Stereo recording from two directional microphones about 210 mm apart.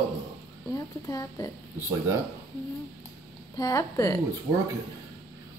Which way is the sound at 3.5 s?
15° left (ahead or behind).